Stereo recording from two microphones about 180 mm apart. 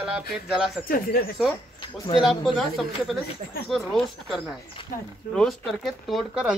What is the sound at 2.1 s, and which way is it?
Speech, centre (ahead or behind).